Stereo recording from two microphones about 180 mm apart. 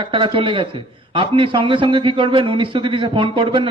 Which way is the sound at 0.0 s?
30° right (ahead or behind).